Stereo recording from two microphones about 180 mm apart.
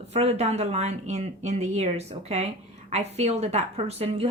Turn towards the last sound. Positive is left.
turn(degrees=-35)  # may be behind; listen again after turning